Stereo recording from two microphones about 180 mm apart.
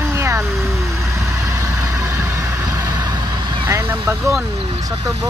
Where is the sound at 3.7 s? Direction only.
15° right (ahead or behind).